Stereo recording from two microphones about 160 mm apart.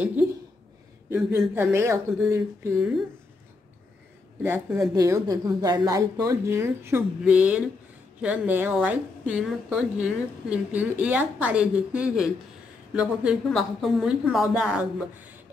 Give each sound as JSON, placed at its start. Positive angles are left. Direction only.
{"t": 0.0, "sound": "speech", "side_deg": -10}
{"t": 1.5, "sound": "a woman's voice", "side_deg": -15}
{"t": 4.4, "sound": "a woman's voice", "side_deg": -15}